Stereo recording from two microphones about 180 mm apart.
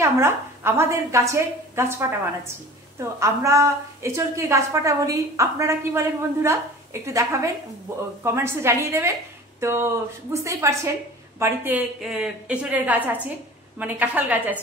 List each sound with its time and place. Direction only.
0.0 s a woman's voice: 15° right (ahead or behind)